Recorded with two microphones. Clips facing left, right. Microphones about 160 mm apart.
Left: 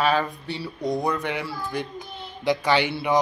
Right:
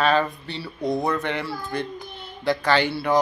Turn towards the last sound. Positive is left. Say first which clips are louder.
# right 1 dB
turn(degrees=15)  # may be behind; listen again after turning